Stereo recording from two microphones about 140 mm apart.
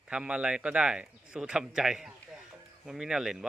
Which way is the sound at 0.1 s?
10° right (ahead or behind).